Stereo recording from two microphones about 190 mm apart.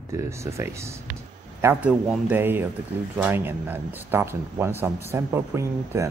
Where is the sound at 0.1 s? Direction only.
15° right (ahead or behind).